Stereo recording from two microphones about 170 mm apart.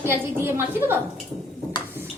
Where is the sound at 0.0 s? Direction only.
15° right (ahead or behind).